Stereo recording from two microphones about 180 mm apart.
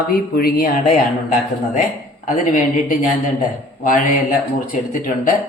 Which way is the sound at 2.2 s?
50° left (ahead or behind).